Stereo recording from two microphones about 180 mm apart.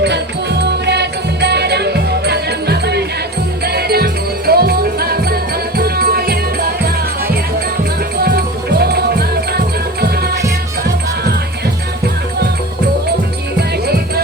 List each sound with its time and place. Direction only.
0.6 s music: 70° right (ahead or behind)